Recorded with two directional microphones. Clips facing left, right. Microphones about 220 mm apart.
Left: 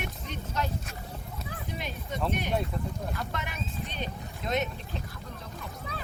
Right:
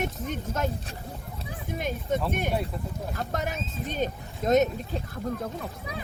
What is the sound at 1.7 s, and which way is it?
Speech, 50° right (ahead or behind).